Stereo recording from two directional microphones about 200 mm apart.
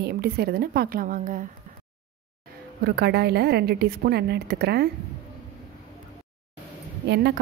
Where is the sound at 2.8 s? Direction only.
55° right (ahead or behind).